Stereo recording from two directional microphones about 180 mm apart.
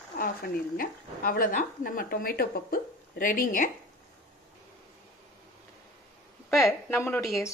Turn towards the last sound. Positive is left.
turn(degrees=15)  # may be behind; listen again after turning